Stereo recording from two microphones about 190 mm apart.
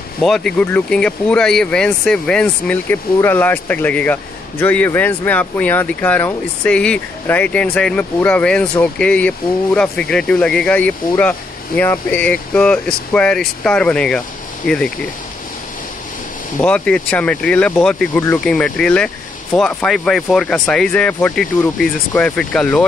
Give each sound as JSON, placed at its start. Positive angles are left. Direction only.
{"t": 0.2, "sound": "speech", "side_deg": 5}
{"t": 16.5, "sound": "speech", "side_deg": 5}